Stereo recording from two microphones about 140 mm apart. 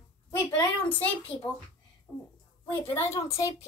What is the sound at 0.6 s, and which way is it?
Speech, 35° left (ahead or behind).